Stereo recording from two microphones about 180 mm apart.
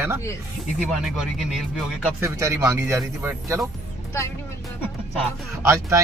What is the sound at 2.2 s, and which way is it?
Speech, 15° right (ahead or behind).